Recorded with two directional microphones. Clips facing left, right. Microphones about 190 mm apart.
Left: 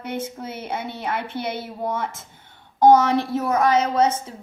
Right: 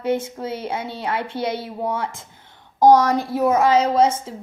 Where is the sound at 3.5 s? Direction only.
25° right (ahead or behind).